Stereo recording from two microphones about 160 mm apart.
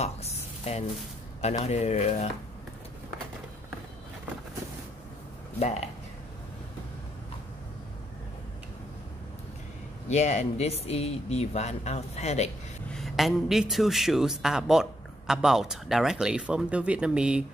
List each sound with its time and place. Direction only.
0.0 s sizzle: 40° left (ahead or behind)
1.4 s speech: 45° left (ahead or behind)
10.0 s speech: 45° left (ahead or behind)
12.9 s a man's voice: centre (ahead or behind)